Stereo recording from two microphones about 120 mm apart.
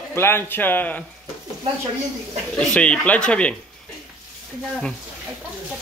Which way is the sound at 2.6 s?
10° left (ahead or behind).